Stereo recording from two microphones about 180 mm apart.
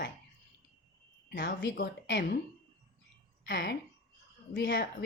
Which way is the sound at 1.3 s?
80° left.